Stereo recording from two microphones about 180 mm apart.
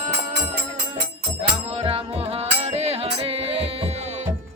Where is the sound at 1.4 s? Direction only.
35° right (ahead or behind).